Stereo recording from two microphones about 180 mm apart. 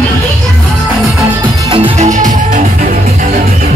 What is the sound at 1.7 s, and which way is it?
Music, 35° right (ahead or behind).